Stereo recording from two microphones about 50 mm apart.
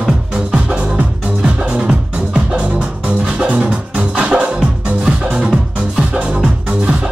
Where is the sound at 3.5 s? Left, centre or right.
Right.